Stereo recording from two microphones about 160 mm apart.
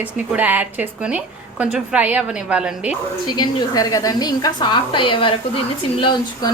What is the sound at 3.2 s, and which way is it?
A woman's voice, 25° left (ahead or behind).